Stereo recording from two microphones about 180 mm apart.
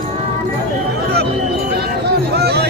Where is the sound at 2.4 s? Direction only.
60° right (ahead or behind).